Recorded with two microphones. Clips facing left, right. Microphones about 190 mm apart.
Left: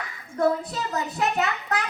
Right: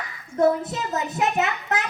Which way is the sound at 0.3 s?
20° right (ahead or behind).